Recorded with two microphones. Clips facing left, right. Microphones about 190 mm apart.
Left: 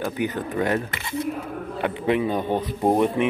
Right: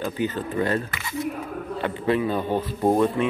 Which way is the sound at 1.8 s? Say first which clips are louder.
Left 1 dB; 15° left (ahead or behind).